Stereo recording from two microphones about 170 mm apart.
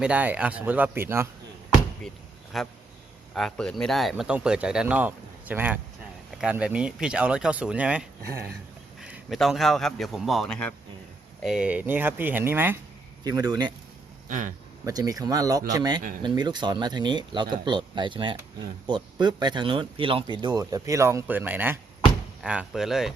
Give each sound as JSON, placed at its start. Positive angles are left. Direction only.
{"t": 0.0, "sound": "speech", "side_deg": -10}
{"t": 2.5, "sound": "speech", "side_deg": 0}
{"t": 11.4, "sound": "speech", "side_deg": -5}
{"t": 14.3, "sound": "speech", "side_deg": -50}
{"t": 14.8, "sound": "speech", "side_deg": -20}